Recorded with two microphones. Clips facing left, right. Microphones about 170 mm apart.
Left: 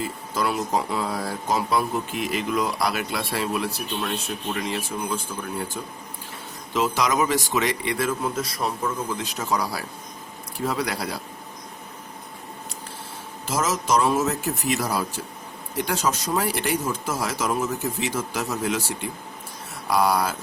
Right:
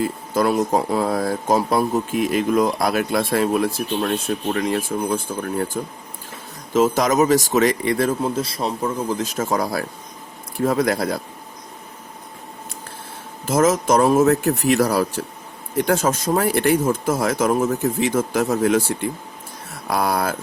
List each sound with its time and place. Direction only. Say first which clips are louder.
0.3 s speech: right 6 dB; 50° right (ahead or behind)
13.5 s speech: right 7 dB; 55° right (ahead or behind); by 15.2 s 70° right (ahead or behind)
15.7 s speech: right 6 dB; 50° right (ahead or behind)
19.9 s a sound: right 1 dB; 55° right (ahead or behind)